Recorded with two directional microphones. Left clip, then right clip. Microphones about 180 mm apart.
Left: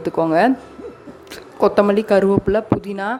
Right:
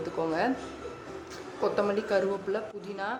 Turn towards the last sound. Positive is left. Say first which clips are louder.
# left 13 dB
turn(degrees=50)  # may be behind; listen again after turning